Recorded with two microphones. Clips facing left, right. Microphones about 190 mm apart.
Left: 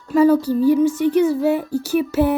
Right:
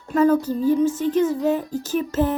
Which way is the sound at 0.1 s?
10° left (ahead or behind).